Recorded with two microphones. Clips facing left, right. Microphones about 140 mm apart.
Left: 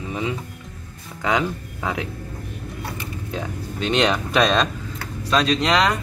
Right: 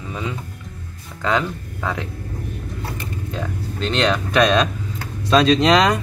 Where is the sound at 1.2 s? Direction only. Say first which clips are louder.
Right 1 dB; 10° left (ahead or behind).